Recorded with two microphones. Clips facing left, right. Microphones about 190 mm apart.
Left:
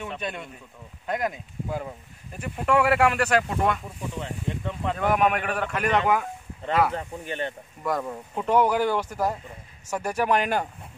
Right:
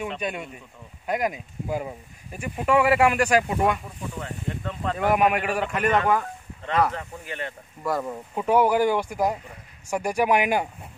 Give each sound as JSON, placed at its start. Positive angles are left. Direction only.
{"t": 0.2, "sound": "speech", "side_deg": -10}
{"t": 4.2, "sound": "speech", "side_deg": 15}
{"t": 4.9, "sound": "speech", "side_deg": -5}
{"t": 6.9, "sound": "speech", "side_deg": 30}
{"t": 7.8, "sound": "speech", "side_deg": -5}